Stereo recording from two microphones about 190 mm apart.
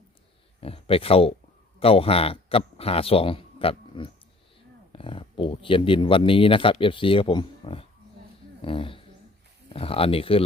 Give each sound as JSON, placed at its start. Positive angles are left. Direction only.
{"t": 0.6, "sound": "speech", "side_deg": 30}